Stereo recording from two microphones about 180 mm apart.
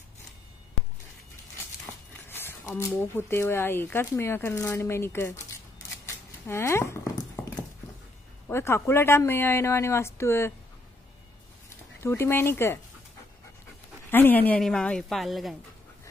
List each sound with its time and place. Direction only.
2.2 s speech: 15° left (ahead or behind)
8.5 s speech: 15° left (ahead or behind)
12.0 s speech: 15° left (ahead or behind)
14.1 s a woman's voice: 10° left (ahead or behind)